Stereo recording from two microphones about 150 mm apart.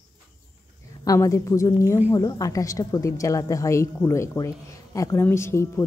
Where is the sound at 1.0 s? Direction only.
20° left (ahead or behind).